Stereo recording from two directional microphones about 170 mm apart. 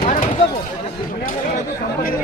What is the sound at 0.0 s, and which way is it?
Chopping, 45° left (ahead or behind).